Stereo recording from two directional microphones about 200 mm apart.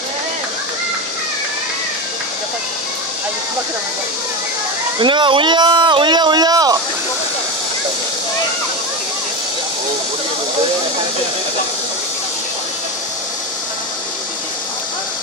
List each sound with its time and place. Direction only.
5.0 s speech: 25° right (ahead or behind)